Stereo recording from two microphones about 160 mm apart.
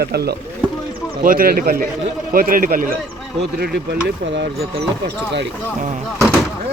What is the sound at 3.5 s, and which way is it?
Speech, 80° right.